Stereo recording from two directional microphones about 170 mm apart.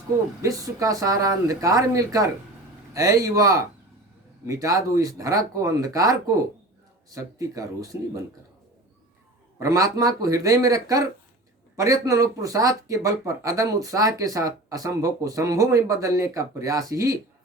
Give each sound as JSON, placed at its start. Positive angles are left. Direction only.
{"t": 0.4, "sound": "speech", "side_deg": -20}
{"t": 9.6, "sound": "speech", "side_deg": -20}